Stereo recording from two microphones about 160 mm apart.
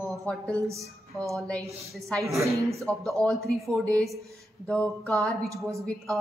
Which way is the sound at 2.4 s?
20° right (ahead or behind).